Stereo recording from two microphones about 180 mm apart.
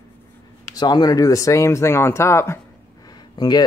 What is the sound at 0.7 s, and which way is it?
Speech, 25° left (ahead or behind).